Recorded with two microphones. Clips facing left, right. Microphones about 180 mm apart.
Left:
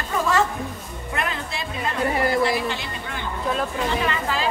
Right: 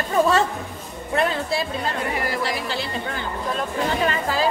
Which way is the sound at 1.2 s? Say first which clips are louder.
Right 7 dB; 35° right (ahead or behind).